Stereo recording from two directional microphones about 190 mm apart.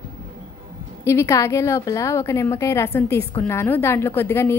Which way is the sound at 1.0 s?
15° left (ahead or behind).